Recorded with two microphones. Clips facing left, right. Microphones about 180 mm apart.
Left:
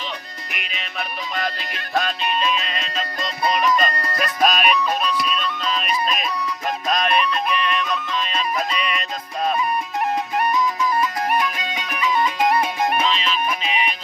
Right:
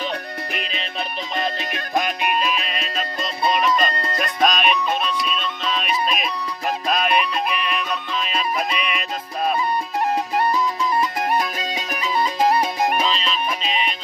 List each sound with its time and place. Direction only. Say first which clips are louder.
0.5 s music: right 1 dB; 30° right (ahead or behind); by 2.3 s 15° right (ahead or behind)
2.5 s music: left 1 dB; 5° right (ahead or behind)
4.2 s music: even; 5° left (ahead or behind)
11.3 s music: even; 35° right (ahead or behind)
13.7 s music: right 1 dB; 10° left (ahead or behind)